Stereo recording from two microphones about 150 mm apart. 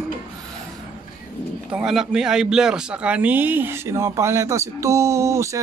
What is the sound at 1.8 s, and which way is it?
Speech, 5° right (ahead or behind).